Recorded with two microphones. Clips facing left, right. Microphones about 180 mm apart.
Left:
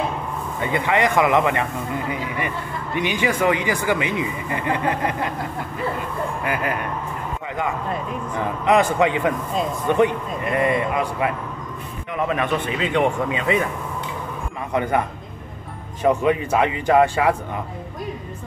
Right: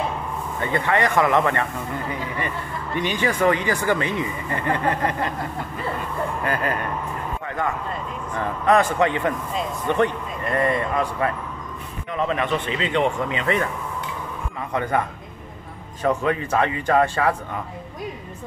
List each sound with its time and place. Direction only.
0.6 s speech: 15° left (ahead or behind)
6.4 s speech: 10° left (ahead or behind)
8.4 s speech: 15° left (ahead or behind)
14.7 s speech: 15° left (ahead or behind)
16.0 s speech: 15° left (ahead or behind)